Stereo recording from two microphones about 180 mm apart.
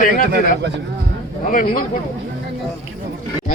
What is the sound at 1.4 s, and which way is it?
Speech, 50° left (ahead or behind).